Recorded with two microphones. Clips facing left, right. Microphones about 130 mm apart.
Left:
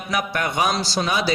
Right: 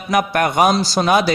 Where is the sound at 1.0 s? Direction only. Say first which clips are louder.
Right 9 dB; 55° right (ahead or behind).